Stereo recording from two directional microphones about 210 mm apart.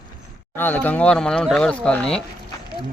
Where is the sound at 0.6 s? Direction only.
10° left (ahead or behind).